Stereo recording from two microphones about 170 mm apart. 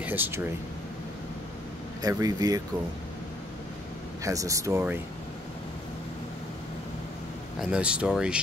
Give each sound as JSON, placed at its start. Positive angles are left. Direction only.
{"t": 0.0, "sound": "speech", "side_deg": -10}
{"t": 2.0, "sound": "speech", "side_deg": -20}
{"t": 4.2, "sound": "speech", "side_deg": -20}
{"t": 7.7, "sound": "speech", "side_deg": -5}